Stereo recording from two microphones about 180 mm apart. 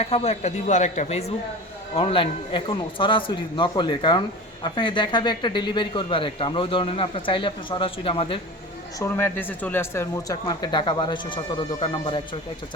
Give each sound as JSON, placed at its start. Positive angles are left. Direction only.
{"t": 0.0, "sound": "a man's voice", "side_deg": 35}
{"t": 9.0, "sound": "a man's voice", "side_deg": 10}